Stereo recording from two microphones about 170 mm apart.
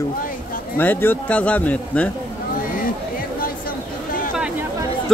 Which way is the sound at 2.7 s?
55° left (ahead or behind).